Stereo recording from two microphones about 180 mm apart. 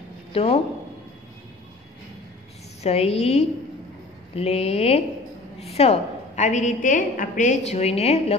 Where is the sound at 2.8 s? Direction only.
35° left (ahead or behind).